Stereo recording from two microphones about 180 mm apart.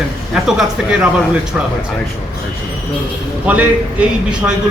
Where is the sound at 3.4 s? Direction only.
5° right (ahead or behind).